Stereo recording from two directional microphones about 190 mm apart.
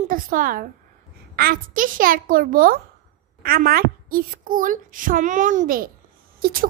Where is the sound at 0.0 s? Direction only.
45° right (ahead or behind).